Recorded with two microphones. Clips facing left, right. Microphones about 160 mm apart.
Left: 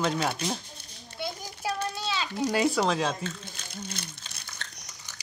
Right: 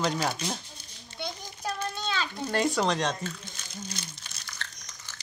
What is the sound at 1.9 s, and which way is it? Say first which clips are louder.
Speech: even; 10° left (ahead or behind).